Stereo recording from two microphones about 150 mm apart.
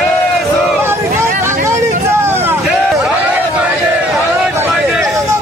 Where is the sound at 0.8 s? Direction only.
15° right (ahead or behind).